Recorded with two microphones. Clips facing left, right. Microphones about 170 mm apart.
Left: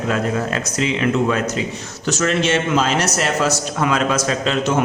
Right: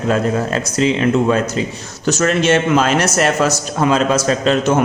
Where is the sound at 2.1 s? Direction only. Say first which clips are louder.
Right 4 dB; 45° right (ahead or behind).